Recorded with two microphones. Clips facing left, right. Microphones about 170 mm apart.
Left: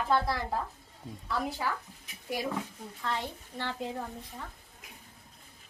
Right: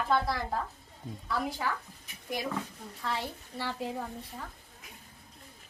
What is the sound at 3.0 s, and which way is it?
A woman's voice, 5° right (ahead or behind).